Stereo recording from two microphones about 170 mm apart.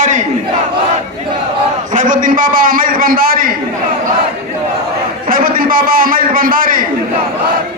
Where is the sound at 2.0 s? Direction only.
50° right (ahead or behind).